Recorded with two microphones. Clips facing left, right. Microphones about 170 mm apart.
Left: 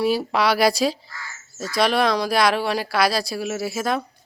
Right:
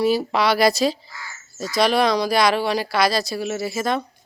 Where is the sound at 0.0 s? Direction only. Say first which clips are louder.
Right 1 dB; centre (ahead or behind).